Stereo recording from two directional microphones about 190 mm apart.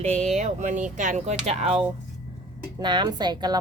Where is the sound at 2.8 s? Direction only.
25° right (ahead or behind).